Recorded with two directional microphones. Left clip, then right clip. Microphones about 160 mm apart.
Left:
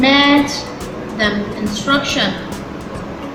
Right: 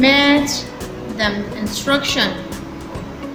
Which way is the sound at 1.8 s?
50° right (ahead or behind).